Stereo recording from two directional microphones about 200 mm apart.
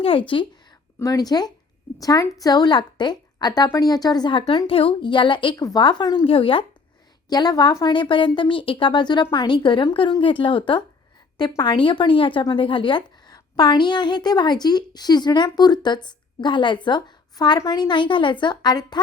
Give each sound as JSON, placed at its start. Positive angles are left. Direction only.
{"t": 0.0, "sound": "a woman's voice", "side_deg": 25}